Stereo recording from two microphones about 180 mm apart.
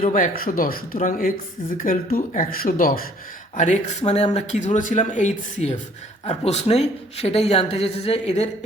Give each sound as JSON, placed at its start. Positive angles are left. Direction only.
{"t": 0.0, "sound": "speech", "side_deg": 45}